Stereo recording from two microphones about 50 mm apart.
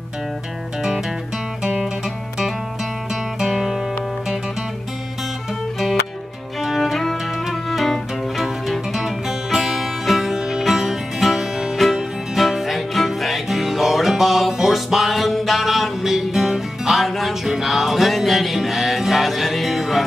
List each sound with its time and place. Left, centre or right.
3.4 s music: centre
6.6 s music: centre
11.7 s music: centre